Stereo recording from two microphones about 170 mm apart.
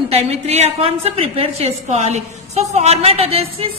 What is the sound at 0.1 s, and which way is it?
A woman's voice, 35° right (ahead or behind).